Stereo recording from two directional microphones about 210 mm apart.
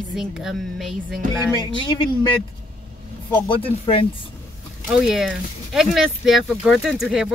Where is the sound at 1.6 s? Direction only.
20° left (ahead or behind).